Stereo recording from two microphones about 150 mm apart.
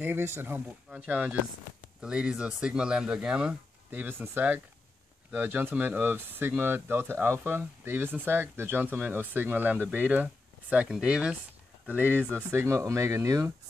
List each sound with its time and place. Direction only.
0.0 s speech: 15° right (ahead or behind)